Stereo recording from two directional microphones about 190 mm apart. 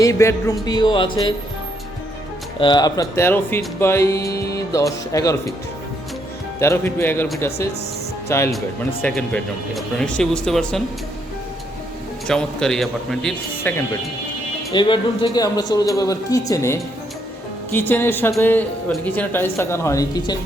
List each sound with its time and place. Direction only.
0.0 s speech: 15° left (ahead or behind)
2.6 s speech: 25° left (ahead or behind)
6.6 s speech: 15° left (ahead or behind)
8.3 s speech: 15° left (ahead or behind)
12.3 s speech: 5° left (ahead or behind)
14.7 s speech: 25° left (ahead or behind)